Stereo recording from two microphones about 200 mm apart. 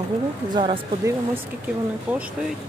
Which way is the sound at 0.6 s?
20° right (ahead or behind).